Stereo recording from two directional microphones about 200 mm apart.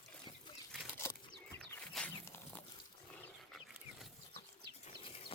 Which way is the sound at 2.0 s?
Centre (ahead or behind).